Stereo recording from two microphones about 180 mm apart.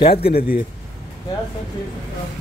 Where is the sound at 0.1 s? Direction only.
60° left (ahead or behind).